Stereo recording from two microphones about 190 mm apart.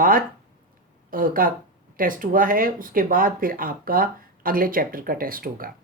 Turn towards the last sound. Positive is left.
turn(degrees=-50)  # may be behind; listen again after turning